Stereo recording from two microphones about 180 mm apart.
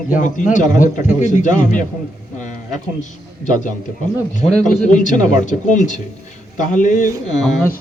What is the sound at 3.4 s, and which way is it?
Speech, 45° left (ahead or behind).